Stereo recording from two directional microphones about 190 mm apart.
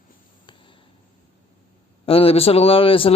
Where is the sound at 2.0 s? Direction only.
30° left (ahead or behind).